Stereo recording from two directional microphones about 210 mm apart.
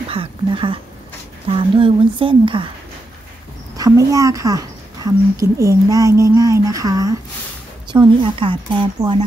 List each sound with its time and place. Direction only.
0.1 s speech: 25° right (ahead or behind)
3.7 s a woman's voice: 15° right (ahead or behind)